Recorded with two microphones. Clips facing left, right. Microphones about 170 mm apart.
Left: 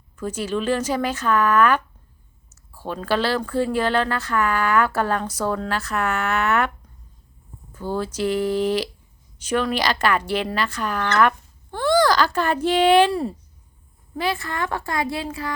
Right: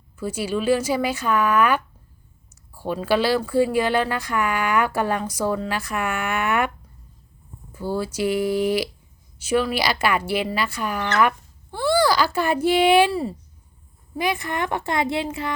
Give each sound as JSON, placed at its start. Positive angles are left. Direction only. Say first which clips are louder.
{"t": 0.2, "sound": "speech", "louder": "even", "side_deg": -10}
{"t": 7.7, "sound": "speech", "louder": "even", "side_deg": -10}
{"t": 14.2, "sound": "a woman's voice", "louder": "right 1 dB", "side_deg": -15}